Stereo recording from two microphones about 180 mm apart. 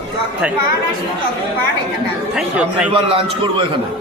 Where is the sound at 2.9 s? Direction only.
30° right (ahead or behind).